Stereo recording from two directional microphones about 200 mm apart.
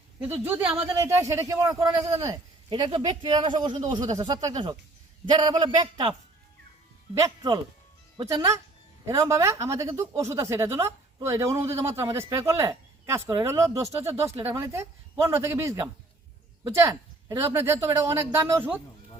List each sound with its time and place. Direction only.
0.4 s a man's voice: 10° right (ahead or behind)
7.1 s a man's voice: 20° right (ahead or behind)